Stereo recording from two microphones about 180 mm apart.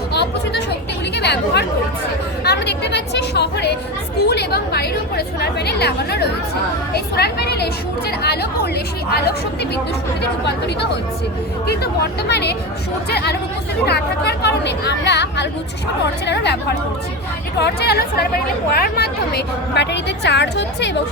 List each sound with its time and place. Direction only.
0.1 s a sound: 65° left (ahead or behind)
1.1 s chatter: 65° left (ahead or behind)
4.3 s a woman's voice: 65° left (ahead or behind)
12.3 s a woman's voice: 65° left (ahead or behind)